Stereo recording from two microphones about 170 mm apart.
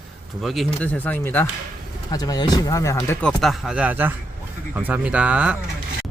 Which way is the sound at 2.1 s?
25° left (ahead or behind).